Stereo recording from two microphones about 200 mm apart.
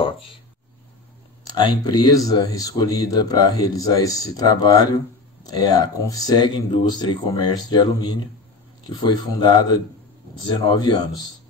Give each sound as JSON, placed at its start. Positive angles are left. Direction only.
{"t": 0.0, "sound": "speech", "side_deg": 25}
{"t": 1.5, "sound": "speech", "side_deg": 20}